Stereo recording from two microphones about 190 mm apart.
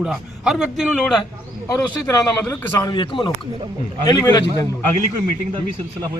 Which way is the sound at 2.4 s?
15° left (ahead or behind).